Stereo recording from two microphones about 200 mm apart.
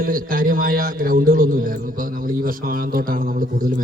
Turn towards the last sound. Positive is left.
turn(degrees=-45)  # may be behind; listen again after turning